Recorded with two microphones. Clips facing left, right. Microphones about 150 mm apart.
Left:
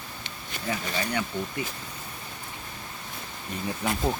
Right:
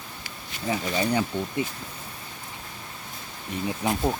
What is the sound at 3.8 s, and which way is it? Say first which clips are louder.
Speech: right 2 dB; 10° right (ahead or behind).